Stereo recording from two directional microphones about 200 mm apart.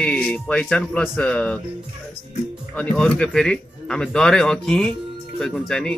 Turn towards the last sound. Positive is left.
turn(degrees=5)  # may be behind; listen again after turning